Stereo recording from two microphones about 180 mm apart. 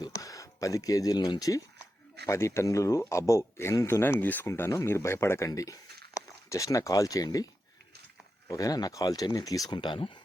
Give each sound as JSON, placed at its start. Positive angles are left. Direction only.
{"t": 0.0, "sound": "speech", "side_deg": 20}
{"t": 8.4, "sound": "speech", "side_deg": 20}